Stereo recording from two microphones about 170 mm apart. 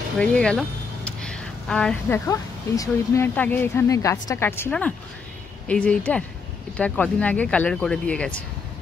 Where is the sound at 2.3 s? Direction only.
20° left (ahead or behind).